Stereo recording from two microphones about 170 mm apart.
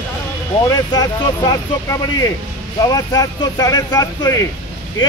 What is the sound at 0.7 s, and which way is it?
Speech, 25° left (ahead or behind).